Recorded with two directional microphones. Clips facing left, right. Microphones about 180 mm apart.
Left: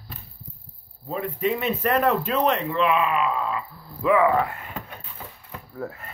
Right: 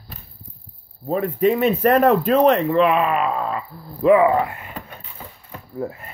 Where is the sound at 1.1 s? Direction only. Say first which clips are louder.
Right 7 dB; 45° right (ahead or behind).